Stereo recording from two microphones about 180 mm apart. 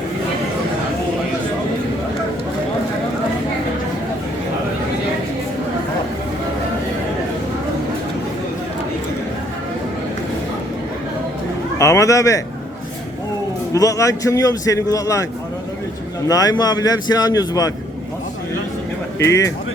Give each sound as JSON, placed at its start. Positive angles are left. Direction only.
{"t": 11.8, "sound": "a man's voice", "side_deg": 15}
{"t": 13.7, "sound": "a man's voice", "side_deg": 20}
{"t": 16.3, "sound": "a man's voice", "side_deg": 20}
{"t": 19.2, "sound": "speech", "side_deg": 15}